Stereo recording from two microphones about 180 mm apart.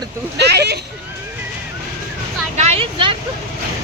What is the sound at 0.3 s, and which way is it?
Vehicle, 65° right (ahead or behind).